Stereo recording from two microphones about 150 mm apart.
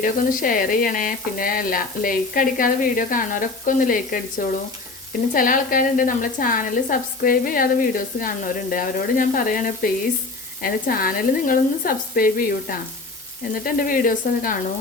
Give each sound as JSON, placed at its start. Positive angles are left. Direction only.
{"t": 0.0, "sound": "a woman's voice", "side_deg": 65}
{"t": 10.6, "sound": "speech", "side_deg": 75}